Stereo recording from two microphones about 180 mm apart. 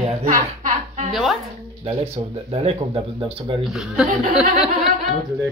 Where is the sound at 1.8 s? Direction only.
35° right (ahead or behind).